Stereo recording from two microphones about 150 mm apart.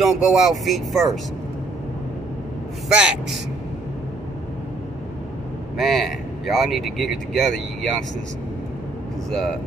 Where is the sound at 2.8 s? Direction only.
5° right (ahead or behind).